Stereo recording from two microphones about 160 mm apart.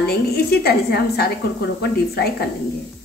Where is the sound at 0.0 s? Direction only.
85° left.